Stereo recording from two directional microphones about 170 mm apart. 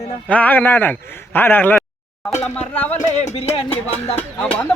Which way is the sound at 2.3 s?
40° left (ahead or behind).